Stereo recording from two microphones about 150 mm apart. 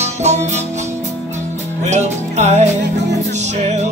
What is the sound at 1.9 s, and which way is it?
Music, 50° right (ahead or behind).